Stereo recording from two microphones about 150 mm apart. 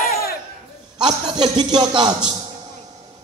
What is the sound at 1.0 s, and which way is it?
A man's voice, 30° right (ahead or behind).